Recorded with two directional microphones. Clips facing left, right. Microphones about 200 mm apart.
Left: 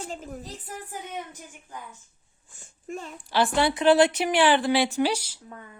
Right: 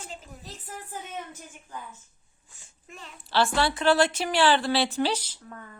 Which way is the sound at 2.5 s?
50° left (ahead or behind).